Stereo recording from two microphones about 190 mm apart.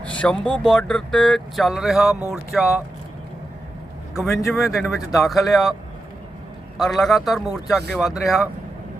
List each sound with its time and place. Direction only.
0.0 s speech: 5° left (ahead or behind)
4.1 s a man's voice: centre (ahead or behind)
6.7 s speech: centre (ahead or behind)